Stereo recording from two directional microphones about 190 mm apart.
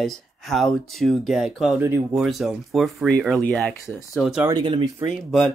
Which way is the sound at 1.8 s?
10° right (ahead or behind).